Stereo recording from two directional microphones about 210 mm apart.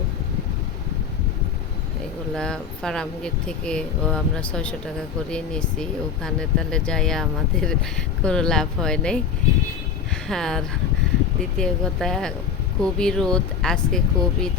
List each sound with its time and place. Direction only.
2.3 s speech: 5° left (ahead or behind)
10.2 s speech: centre (ahead or behind)